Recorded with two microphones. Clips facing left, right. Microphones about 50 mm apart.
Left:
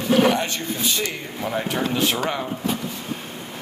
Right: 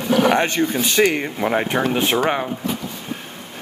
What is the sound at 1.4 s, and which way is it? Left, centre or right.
Speech, right.